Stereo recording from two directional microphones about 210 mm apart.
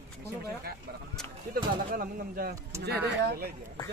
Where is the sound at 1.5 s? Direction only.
45° right (ahead or behind).